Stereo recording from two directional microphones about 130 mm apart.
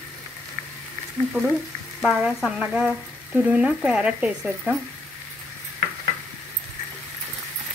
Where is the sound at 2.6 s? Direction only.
5° right (ahead or behind).